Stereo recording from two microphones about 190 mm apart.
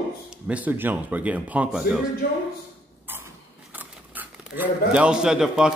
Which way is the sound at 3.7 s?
10° right (ahead or behind).